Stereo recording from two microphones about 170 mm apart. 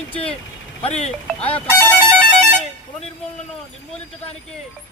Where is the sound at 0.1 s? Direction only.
35° left (ahead or behind).